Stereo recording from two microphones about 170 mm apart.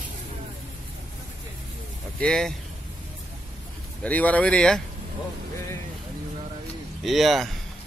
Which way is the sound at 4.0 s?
10° left (ahead or behind).